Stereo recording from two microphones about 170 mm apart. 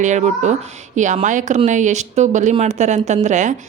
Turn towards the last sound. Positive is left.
turn(degrees=-45)  # may be behind; listen again after turning